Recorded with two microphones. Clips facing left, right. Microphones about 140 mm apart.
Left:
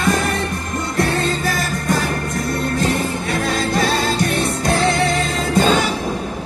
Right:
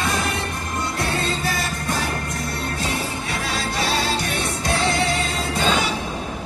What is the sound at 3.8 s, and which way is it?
Music, 50° left (ahead or behind).